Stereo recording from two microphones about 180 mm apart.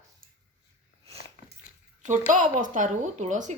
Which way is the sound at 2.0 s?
45° right (ahead or behind).